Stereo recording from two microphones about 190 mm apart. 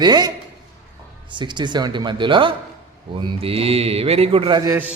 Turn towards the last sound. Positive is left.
turn(degrees=-10)  # may be behind; listen again after turning